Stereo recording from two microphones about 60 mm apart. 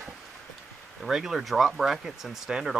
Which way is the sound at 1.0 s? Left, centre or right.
Centre.